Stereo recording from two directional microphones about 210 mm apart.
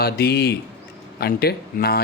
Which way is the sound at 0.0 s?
50° left (ahead or behind).